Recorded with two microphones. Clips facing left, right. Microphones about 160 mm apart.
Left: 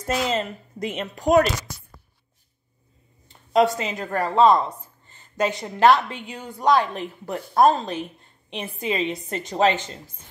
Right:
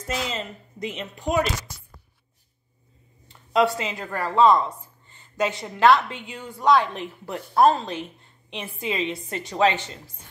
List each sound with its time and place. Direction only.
0.1 s a woman's voice: 55° left (ahead or behind)
1.3 s speech: 70° left (ahead or behind)
3.5 s speech: 45° left (ahead or behind)
6.2 s speech: 45° left (ahead or behind)